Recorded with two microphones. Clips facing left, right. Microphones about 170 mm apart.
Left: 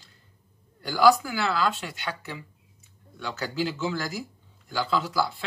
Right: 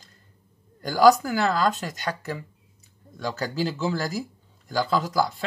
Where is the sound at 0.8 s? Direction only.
45° right (ahead or behind).